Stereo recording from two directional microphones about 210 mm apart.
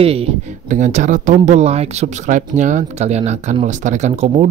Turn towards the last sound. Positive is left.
turn(degrees=-30)  # may be behind; listen again after turning